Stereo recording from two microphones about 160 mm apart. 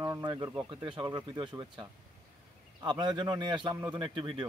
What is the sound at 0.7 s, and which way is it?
Speech, 30° right (ahead or behind).